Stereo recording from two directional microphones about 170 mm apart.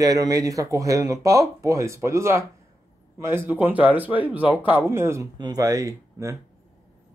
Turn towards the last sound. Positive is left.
turn(degrees=-20)  # may be behind; listen again after turning